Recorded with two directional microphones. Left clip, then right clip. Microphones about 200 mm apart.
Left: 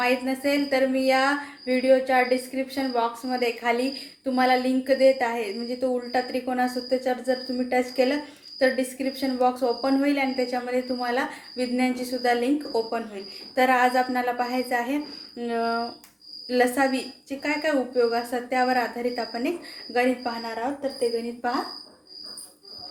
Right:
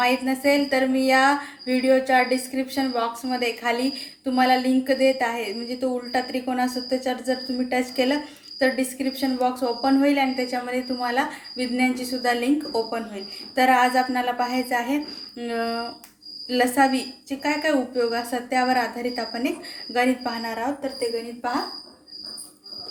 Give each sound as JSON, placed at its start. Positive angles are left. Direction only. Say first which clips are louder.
{"t": 0.0, "sound": "a woman's voice", "louder": "right 3 dB", "side_deg": 0}
{"t": 21.0, "sound": "speech", "louder": "left 2 dB", "side_deg": 15}